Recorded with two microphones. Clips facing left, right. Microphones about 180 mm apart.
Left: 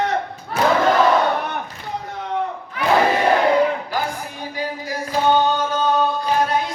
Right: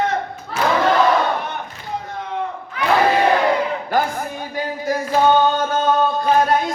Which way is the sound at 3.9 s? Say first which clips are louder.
Right 5 dB; 50° right (ahead or behind).